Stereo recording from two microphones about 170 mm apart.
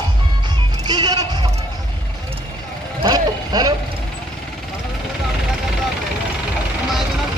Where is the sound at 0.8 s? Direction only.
25° right (ahead or behind).